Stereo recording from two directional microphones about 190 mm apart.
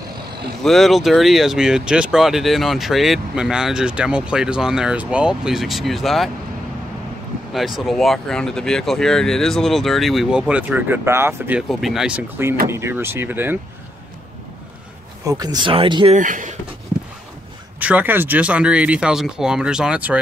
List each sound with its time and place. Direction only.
0.7 s speech: centre (ahead or behind)
7.5 s speech: centre (ahead or behind)
15.2 s speech: 20° right (ahead or behind)
16.2 s speech: 40° right (ahead or behind)
17.7 s speech: 10° right (ahead or behind)